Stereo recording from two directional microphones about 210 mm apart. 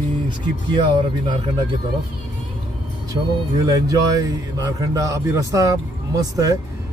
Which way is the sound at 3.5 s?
20° right (ahead or behind).